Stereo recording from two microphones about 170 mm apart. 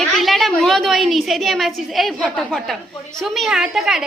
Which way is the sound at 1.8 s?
Centre (ahead or behind).